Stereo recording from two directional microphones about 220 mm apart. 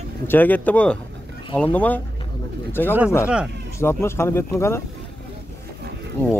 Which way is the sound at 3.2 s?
5° right (ahead or behind).